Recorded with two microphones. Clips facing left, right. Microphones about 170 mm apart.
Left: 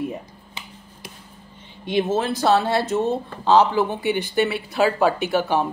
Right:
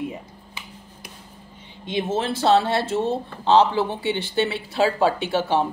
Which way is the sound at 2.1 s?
25° right (ahead or behind).